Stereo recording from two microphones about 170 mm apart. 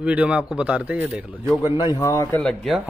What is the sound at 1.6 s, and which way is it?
Speech, 20° left (ahead or behind).